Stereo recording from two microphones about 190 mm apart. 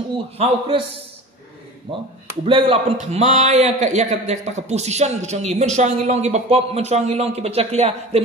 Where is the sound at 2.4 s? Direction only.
30° right (ahead or behind).